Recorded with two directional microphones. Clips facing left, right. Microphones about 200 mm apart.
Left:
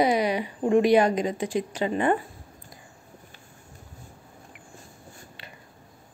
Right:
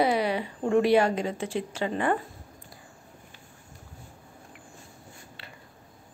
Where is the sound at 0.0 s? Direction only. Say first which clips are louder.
Left 2 dB; 15° left (ahead or behind).